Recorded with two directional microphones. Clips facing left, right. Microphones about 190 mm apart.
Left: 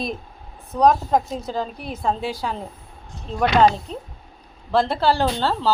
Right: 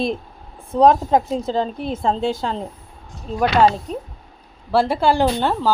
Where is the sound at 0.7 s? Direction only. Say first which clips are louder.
Right 3 dB; 25° right (ahead or behind).